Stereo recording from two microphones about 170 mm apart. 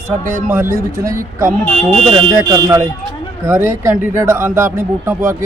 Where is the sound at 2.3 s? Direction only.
20° right (ahead or behind).